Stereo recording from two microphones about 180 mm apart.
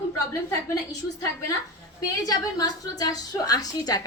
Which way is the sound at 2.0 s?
20° left (ahead or behind).